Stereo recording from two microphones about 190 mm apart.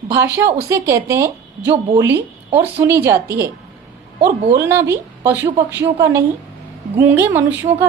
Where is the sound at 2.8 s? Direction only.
15° right (ahead or behind).